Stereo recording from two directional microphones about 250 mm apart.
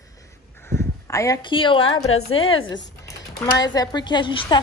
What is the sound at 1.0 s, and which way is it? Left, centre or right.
A woman's voice, centre.